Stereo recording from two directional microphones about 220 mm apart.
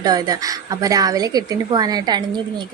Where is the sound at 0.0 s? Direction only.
15° right (ahead or behind).